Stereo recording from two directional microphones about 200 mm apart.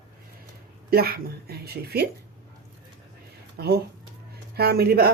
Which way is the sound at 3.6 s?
55° right (ahead or behind).